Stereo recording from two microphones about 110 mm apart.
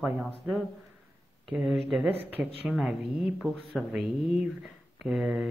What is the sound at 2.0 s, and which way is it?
Speech, 15° right (ahead or behind).